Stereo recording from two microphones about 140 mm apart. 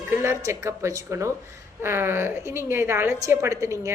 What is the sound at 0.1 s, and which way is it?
A woman's voice, 20° right (ahead or behind).